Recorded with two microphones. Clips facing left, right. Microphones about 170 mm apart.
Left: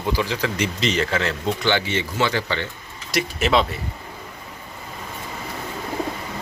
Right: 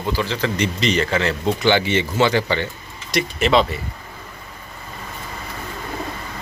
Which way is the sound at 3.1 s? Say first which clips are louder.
Right 2 dB; 5° left (ahead or behind).